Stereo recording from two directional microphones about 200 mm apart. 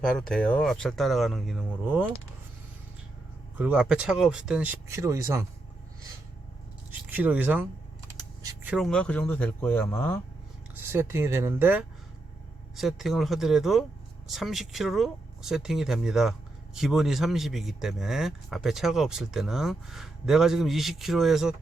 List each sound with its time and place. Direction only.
0.0 s a man's voice: 5° left (ahead or behind)
3.6 s speech: 5° right (ahead or behind)
7.1 s speech: 5° right (ahead or behind)
8.1 s typing: 15° right (ahead or behind)
8.7 s speech: 5° left (ahead or behind)
10.8 s a man's voice: 10° right (ahead or behind)